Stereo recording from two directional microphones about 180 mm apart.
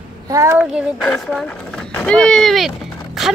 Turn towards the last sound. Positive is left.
turn(degrees=0)  # may be behind; listen again after turning